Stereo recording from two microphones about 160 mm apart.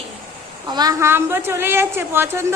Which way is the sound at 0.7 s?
25° right (ahead or behind).